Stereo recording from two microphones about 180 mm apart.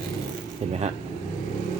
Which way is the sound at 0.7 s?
40° right (ahead or behind).